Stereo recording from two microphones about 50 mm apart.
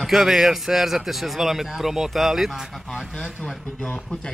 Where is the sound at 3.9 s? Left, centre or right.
Centre.